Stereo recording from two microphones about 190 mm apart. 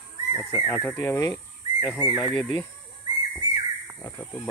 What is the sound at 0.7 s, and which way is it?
Speech, 10° left (ahead or behind).